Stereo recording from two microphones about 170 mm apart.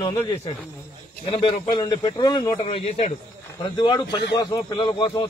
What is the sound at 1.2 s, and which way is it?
A man's voice, 30° left (ahead or behind).